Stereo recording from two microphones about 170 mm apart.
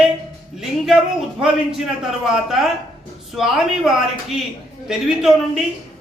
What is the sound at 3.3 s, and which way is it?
Speech, centre (ahead or behind).